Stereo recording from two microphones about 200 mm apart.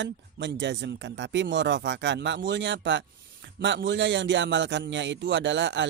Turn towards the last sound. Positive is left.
turn(degrees=-65)  # may be behind; listen again after turning